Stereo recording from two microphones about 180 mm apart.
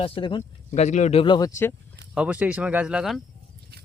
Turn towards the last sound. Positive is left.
turn(degrees=-5)  # may be behind; listen again after turning